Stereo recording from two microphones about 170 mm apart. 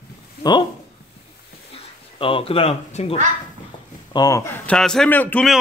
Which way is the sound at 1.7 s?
30° left (ahead or behind).